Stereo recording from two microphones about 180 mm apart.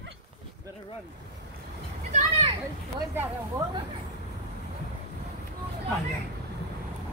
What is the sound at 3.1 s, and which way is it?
Speech, 10° right (ahead or behind).